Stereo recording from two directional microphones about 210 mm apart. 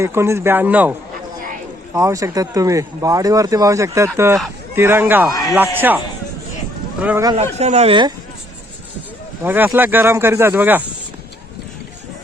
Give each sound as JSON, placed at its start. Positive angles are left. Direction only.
{"t": 0.0, "sound": "speech", "side_deg": -15}
{"t": 5.3, "sound": "speech", "side_deg": 15}
{"t": 5.5, "sound": "speech", "side_deg": -10}
{"t": 7.0, "sound": "speech", "side_deg": -5}
{"t": 7.3, "sound": "speech", "side_deg": -30}
{"t": 9.4, "sound": "speech", "side_deg": -10}